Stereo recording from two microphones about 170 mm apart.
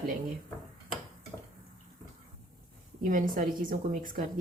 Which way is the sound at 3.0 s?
50° right (ahead or behind).